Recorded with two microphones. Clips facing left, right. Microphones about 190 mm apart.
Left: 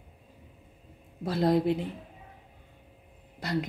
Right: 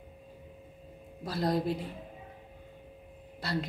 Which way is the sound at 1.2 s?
25° left (ahead or behind).